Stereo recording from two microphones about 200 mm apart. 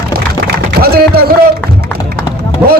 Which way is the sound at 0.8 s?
50° right (ahead or behind).